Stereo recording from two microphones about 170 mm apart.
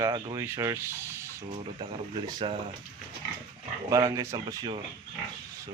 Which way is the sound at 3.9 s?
20° right (ahead or behind).